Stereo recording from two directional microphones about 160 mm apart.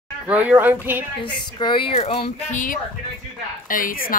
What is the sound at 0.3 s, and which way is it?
Speech, 10° right (ahead or behind).